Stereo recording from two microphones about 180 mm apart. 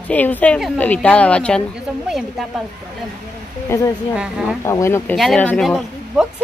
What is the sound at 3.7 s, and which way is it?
Speech, 15° left (ahead or behind).